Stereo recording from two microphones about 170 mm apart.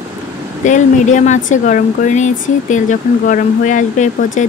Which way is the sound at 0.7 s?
45° left (ahead or behind).